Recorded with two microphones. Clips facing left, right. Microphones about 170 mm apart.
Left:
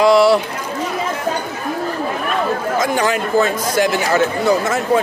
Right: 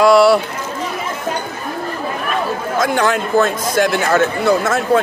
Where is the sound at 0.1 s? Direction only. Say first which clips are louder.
Right 1 dB; 15° left (ahead or behind).